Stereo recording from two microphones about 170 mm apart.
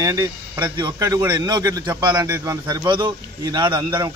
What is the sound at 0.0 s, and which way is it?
Speech, 20° right (ahead or behind).